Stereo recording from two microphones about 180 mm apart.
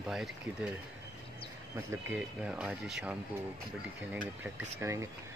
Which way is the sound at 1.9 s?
5° right (ahead or behind).